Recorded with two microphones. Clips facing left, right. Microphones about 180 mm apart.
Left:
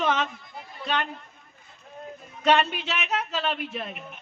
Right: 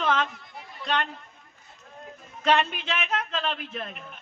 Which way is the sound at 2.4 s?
Centre (ahead or behind).